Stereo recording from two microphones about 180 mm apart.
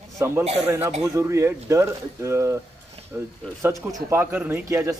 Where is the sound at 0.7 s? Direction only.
15° right (ahead or behind).